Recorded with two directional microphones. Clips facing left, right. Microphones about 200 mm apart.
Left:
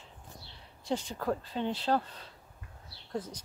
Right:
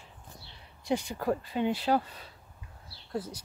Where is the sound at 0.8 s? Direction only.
10° right (ahead or behind).